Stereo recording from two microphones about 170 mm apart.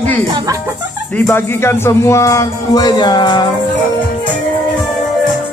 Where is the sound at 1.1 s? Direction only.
10° left (ahead or behind); by 3.4 s 25° left (ahead or behind).